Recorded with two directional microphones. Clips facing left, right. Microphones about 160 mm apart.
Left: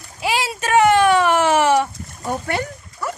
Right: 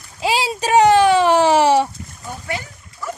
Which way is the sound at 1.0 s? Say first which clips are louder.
Right 2 dB; 35° right (ahead or behind).